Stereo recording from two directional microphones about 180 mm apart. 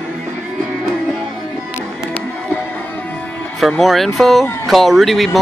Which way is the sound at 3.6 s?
Centre (ahead or behind).